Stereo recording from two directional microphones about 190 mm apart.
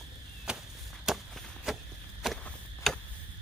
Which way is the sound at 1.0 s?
Centre (ahead or behind).